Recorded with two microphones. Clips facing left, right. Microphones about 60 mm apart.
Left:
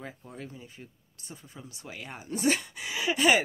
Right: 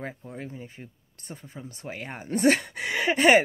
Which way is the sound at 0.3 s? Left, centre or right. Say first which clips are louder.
Right 5 dB; right.